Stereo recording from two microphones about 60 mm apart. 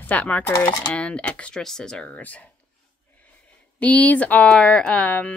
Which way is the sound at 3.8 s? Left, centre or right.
Left.